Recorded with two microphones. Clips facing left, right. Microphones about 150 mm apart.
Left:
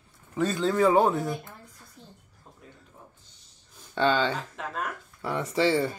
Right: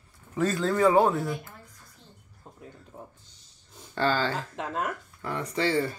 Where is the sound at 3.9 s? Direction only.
Centre (ahead or behind).